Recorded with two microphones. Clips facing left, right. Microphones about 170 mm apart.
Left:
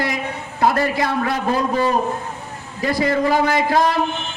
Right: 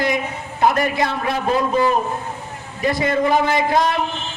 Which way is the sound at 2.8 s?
20° right (ahead or behind).